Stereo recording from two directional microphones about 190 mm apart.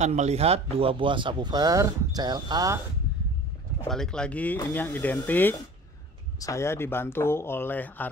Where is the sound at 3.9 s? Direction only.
5° left (ahead or behind).